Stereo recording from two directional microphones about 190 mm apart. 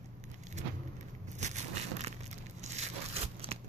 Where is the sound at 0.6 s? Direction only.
40° right (ahead or behind).